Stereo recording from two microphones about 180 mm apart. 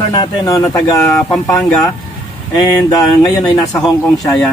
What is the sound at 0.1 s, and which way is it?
Speech, 20° left (ahead or behind).